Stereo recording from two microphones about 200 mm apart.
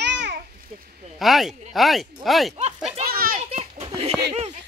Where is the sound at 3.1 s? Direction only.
45° right (ahead or behind).